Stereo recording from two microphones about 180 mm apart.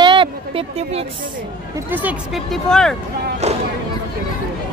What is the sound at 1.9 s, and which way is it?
Speech, 10° right (ahead or behind).